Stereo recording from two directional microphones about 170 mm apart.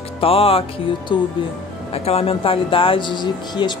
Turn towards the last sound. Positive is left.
turn(degrees=25)  # may be behind; listen again after turning